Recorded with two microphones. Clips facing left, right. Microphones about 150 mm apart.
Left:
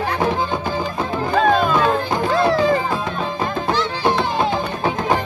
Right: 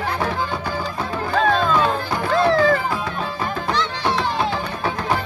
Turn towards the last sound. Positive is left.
turn(degrees=20)  # may be behind; listen again after turning